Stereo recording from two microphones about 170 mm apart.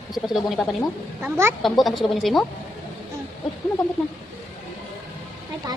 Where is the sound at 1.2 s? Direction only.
15° right (ahead or behind).